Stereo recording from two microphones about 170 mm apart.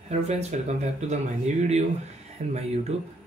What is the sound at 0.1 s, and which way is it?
Speech, 40° right (ahead or behind).